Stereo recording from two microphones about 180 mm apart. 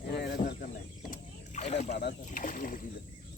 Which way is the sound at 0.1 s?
65° left (ahead or behind).